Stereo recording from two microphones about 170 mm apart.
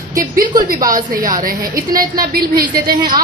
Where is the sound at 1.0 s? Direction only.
50° right (ahead or behind).